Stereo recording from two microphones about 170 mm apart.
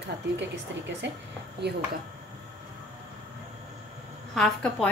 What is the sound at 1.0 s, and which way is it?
Speech, 90° right.